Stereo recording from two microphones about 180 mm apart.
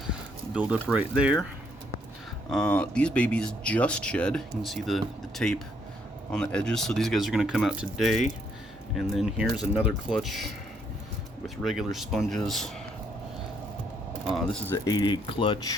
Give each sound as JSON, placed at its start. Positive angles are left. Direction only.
{"t": 0.1, "sound": "speech", "side_deg": -5}
{"t": 2.5, "sound": "speech", "side_deg": 5}
{"t": 14.3, "sound": "speech", "side_deg": 0}
{"t": 14.8, "sound": "speech", "side_deg": 25}